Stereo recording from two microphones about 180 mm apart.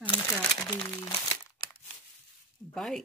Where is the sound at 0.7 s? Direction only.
15° left (ahead or behind).